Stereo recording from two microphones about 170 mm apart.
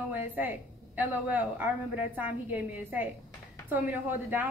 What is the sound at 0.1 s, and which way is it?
A woman's voice, 10° right (ahead or behind).